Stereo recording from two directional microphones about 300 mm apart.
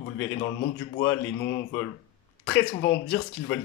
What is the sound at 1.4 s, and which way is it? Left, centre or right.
Speech, left.